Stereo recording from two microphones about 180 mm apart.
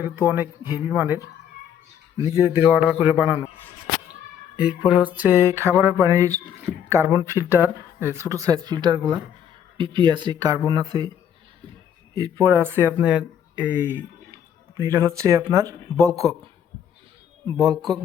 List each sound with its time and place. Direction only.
0.0 s speech: 10° right (ahead or behind)
4.1 s a sound: 5° right (ahead or behind)
6.8 s speech: 15° right (ahead or behind)
12.1 s speech: 20° right (ahead or behind)
17.4 s speech: 20° right (ahead or behind)